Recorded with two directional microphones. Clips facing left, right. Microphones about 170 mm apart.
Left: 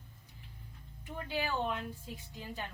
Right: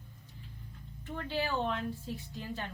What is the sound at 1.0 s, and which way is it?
Speech, 10° left (ahead or behind).